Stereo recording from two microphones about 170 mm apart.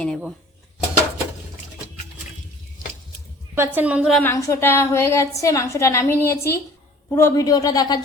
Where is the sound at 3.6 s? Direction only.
10° right (ahead or behind).